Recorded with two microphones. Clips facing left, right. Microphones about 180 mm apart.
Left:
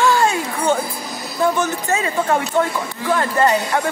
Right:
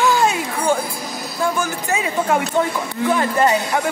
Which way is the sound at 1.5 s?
10° right (ahead or behind).